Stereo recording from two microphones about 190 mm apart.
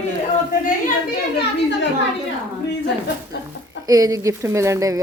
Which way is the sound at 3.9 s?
20° right (ahead or behind).